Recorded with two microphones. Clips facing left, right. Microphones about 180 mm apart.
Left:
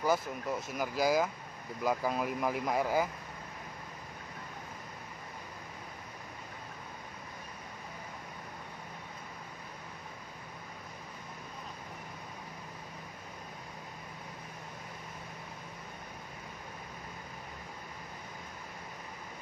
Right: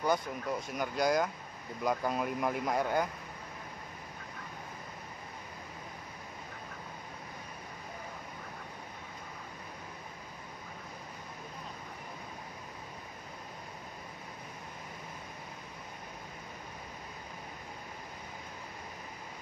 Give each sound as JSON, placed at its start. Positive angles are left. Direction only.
{"t": 0.0, "sound": "speech", "side_deg": 5}